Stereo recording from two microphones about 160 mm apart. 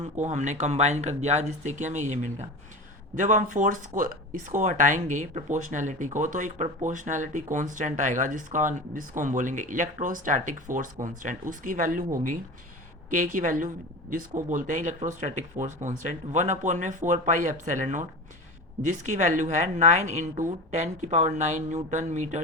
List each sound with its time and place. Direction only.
0.0 s speech: 45° right (ahead or behind)